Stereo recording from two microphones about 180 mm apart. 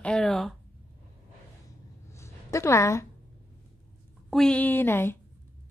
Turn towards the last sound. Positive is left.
turn(degrees=10)  # may be behind; listen again after turning